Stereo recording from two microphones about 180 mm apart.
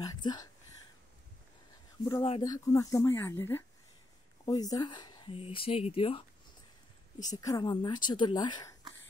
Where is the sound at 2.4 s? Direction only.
20° left (ahead or behind).